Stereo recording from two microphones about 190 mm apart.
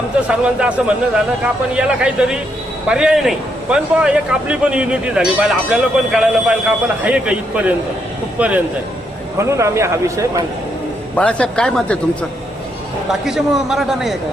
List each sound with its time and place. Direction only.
0.3 s a man's voice: 5° right (ahead or behind)
11.1 s a man's voice: 5° left (ahead or behind)
13.2 s a man's voice: centre (ahead or behind)